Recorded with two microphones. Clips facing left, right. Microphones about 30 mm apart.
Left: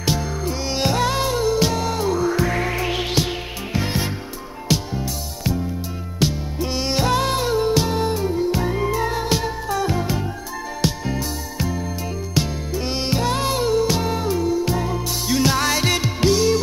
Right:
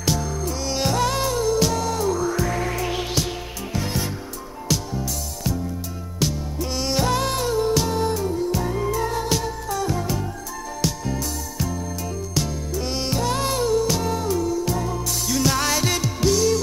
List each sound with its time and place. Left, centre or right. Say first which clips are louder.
0.0 s music: left 1 dB; left